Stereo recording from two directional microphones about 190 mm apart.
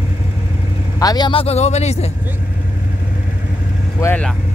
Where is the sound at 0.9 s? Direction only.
20° left (ahead or behind).